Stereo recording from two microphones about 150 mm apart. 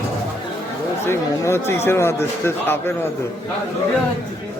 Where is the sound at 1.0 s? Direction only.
15° left (ahead or behind).